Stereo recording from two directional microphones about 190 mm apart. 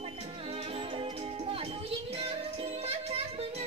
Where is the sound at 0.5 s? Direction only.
30° right (ahead or behind).